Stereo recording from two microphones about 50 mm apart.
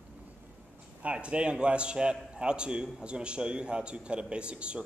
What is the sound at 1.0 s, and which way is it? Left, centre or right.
A man's voice, right.